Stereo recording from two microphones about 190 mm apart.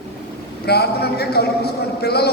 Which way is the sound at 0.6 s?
55° left (ahead or behind).